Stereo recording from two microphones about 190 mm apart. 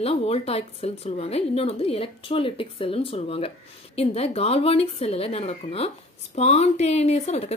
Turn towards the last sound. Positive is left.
turn(degrees=35)  # may be behind; listen again after turning